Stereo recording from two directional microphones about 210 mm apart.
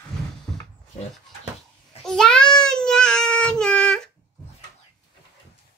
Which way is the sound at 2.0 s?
5° left (ahead or behind).